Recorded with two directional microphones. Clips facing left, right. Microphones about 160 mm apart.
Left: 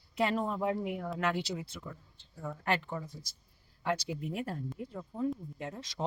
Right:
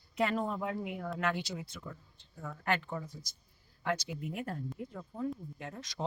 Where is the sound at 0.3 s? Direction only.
25° left (ahead or behind).